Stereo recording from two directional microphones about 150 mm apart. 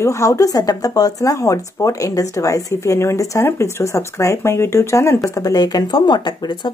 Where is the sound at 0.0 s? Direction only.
20° left (ahead or behind).